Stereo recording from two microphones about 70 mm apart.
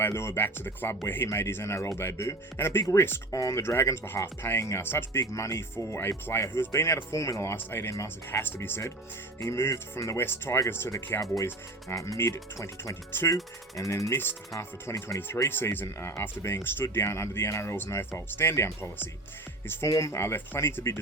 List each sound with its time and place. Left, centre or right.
0.0 s speech: left
3.3 s speech: left
3.6 s speech: left
5.2 s speech: left
7.5 s speech: left
7.9 s speech: left
8.3 s speech: left
11.9 s speech: left
13.7 s speech: left
14.6 s speech: left
15.4 s speech: left
19.9 s speech: left